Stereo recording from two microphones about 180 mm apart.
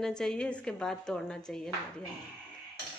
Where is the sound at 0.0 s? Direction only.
Centre (ahead or behind).